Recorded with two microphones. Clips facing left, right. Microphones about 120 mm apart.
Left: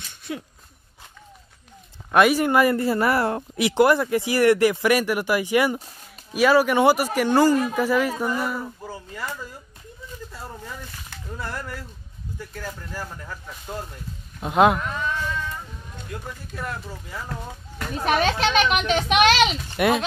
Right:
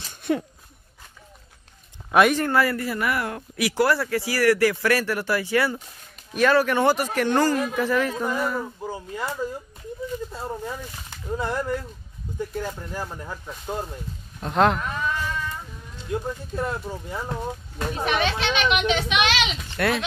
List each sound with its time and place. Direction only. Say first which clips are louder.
0.3 s speech: right 8 dB; 55° right (ahead or behind)
2.0 s a sound: left 1 dB; centre (ahead or behind)
2.3 s a woman's voice: left 3 dB; 15° left (ahead or behind)
8.8 s speech: right 3 dB; 20° right (ahead or behind)
11.3 s speech: right 7 dB; 20° right (ahead or behind)
14.4 s a woman's voice: left 2 dB; 10° left (ahead or behind)
14.8 s speech: even; centre (ahead or behind)
16.1 s speech: right 9 dB; 25° right (ahead or behind)
18.0 s a child's voice: left 4 dB; 40° left (ahead or behind)